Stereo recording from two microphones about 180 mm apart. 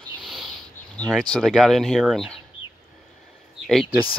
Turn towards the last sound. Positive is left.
turn(degrees=0)  # may be behind; listen again after turning